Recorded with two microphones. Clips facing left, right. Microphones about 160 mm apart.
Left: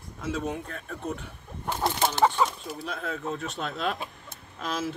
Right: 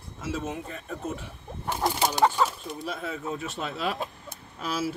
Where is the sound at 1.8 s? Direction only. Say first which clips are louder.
Even; 15° right (ahead or behind).